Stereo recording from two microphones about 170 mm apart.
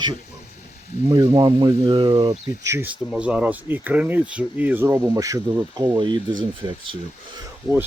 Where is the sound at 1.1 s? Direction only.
20° right (ahead or behind).